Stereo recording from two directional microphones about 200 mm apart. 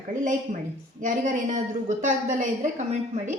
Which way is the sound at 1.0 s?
40° right (ahead or behind).